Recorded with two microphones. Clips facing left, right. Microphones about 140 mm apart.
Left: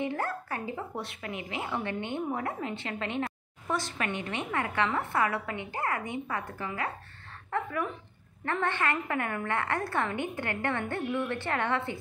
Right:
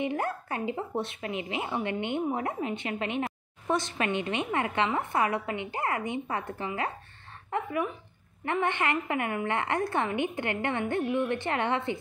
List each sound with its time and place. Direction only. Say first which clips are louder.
0.0 s a woman's voice: right 2 dB; 20° right (ahead or behind)